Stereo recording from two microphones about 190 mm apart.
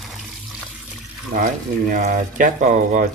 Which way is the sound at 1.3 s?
40° right (ahead or behind).